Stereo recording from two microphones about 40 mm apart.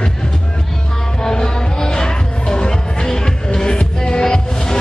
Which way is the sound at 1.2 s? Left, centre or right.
Centre.